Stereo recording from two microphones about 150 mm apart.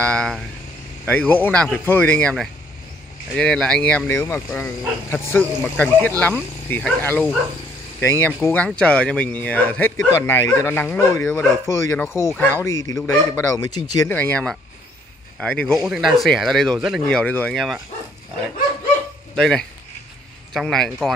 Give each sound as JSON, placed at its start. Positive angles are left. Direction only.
{"t": 0.0, "sound": "speech", "side_deg": 5}
{"t": 14.0, "sound": "speech", "side_deg": 10}
{"t": 19.3, "sound": "speech", "side_deg": 5}